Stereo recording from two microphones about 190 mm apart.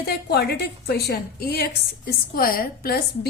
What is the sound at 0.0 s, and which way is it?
A woman's voice, 55° left (ahead or behind).